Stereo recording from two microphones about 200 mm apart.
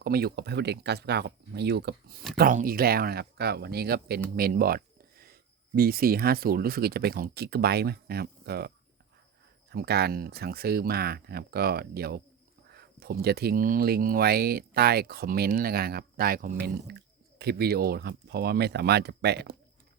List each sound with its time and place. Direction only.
0.0 s speech: 50° right (ahead or behind)
2.3 s speech: 45° right (ahead or behind)